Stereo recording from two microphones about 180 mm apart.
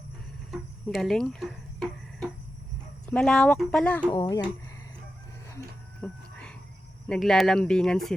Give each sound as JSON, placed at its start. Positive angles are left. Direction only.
{"t": 0.5, "sound": "a sound", "side_deg": 0}
{"t": 3.1, "sound": "speech", "side_deg": 5}
{"t": 4.1, "sound": "speech", "side_deg": 20}
{"t": 6.0, "sound": "speech", "side_deg": 10}